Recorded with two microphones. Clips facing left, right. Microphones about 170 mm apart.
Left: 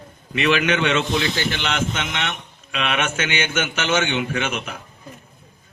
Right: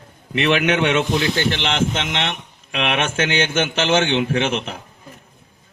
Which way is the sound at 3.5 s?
30° right (ahead or behind).